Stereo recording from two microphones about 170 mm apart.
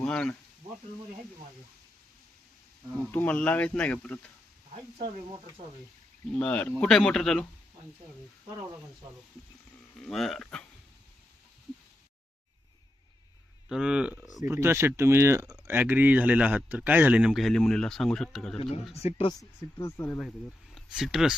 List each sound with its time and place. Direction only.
0.0 s speech: 5° left (ahead or behind)
3.1 s speech: 10° left (ahead or behind)
4.9 s speech: 35° right (ahead or behind)
6.3 s speech: 5° left (ahead or behind)
10.1 s speech: centre (ahead or behind)
13.7 s speech: 5° right (ahead or behind)
18.5 s speech: 35° left (ahead or behind)
19.4 s speech: 20° left (ahead or behind)
20.1 s speech: 5° left (ahead or behind)